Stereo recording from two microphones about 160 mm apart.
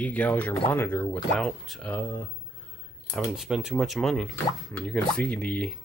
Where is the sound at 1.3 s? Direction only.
Centre (ahead or behind).